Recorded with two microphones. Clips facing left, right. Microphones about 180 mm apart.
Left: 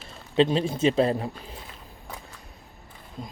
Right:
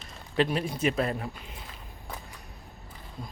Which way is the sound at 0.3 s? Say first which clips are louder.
Left 5 dB; 25° left (ahead or behind).